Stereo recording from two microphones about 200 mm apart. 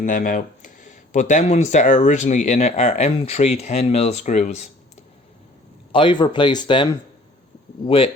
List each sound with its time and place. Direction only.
0.0 s speech: 40° left (ahead or behind)
5.9 s speech: 25° left (ahead or behind)
7.9 s speech: 25° left (ahead or behind)